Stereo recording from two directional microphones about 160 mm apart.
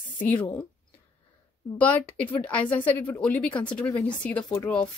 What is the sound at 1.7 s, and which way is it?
A woman's voice, 10° left (ahead or behind).